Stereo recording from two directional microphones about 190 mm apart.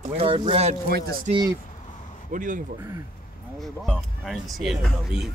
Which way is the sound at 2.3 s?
45° right (ahead or behind).